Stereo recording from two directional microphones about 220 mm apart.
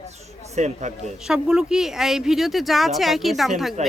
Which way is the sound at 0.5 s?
30° right (ahead or behind).